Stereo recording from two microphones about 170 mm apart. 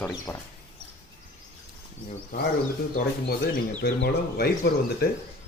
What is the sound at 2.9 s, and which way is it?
Speech, 55° left (ahead or behind).